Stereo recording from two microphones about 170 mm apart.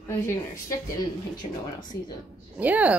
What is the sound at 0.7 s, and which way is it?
Speech, 20° left (ahead or behind).